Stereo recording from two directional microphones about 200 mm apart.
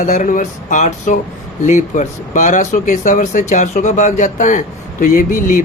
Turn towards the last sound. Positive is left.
turn(degrees=45)  # may be behind; listen again after turning